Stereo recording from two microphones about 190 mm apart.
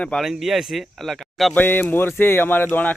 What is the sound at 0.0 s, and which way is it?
A man's voice, 5° left (ahead or behind).